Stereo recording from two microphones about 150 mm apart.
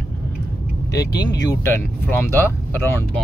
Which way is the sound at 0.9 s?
25° left (ahead or behind).